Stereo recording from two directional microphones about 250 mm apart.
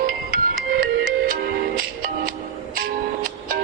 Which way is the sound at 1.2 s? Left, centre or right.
Right.